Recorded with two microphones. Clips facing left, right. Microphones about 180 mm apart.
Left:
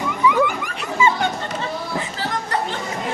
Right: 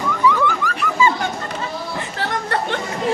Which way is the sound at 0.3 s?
20° left (ahead or behind).